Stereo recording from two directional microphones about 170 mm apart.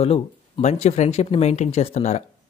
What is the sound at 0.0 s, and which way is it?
Speech, 40° left (ahead or behind).